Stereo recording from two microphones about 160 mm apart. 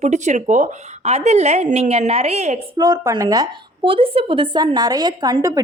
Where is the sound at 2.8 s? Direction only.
25° right (ahead or behind).